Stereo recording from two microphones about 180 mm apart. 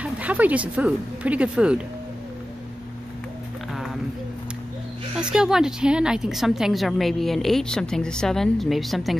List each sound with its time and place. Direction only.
0.0 s speech: 10° right (ahead or behind)
5.1 s a woman's voice: 5° right (ahead or behind)